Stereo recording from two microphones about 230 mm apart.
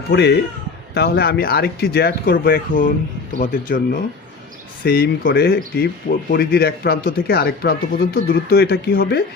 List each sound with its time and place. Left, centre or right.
0.1 s speech: left
4.9 s speech: left